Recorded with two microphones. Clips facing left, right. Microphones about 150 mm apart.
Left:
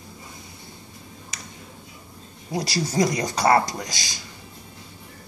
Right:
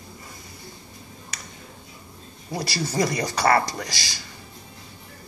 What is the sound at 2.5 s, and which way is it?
Speech, 15° left (ahead or behind).